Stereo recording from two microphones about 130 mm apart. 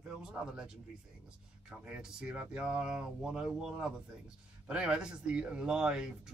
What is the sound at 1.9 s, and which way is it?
Speech, 5° right (ahead or behind).